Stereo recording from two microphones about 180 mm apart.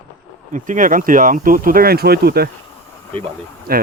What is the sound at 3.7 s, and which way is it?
Speech, 55° right (ahead or behind).